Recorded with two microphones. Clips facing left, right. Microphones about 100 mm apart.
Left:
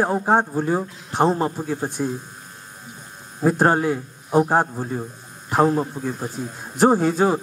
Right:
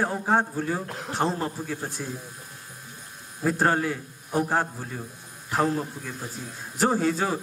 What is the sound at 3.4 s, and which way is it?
A man's voice, 20° left (ahead or behind).